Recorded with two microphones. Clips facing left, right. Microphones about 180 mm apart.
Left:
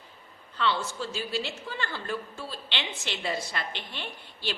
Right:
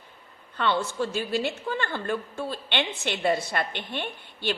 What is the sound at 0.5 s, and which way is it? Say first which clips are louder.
A woman's voice: right 3 dB; 55° right (ahead or behind).